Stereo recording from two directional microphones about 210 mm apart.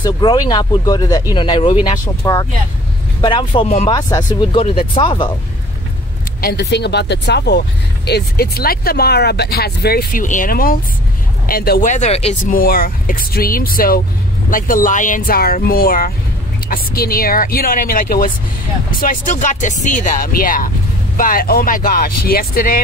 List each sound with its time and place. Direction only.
0.0 s speech: 20° left (ahead or behind)
3.9 s speech: 15° left (ahead or behind)
6.4 s speech: 50° left (ahead or behind); by 12.5 s 30° left (ahead or behind)
12.5 s speech: 45° left (ahead or behind)